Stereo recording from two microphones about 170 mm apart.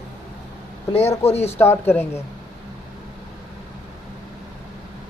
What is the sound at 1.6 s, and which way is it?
Speech, 15° left (ahead or behind).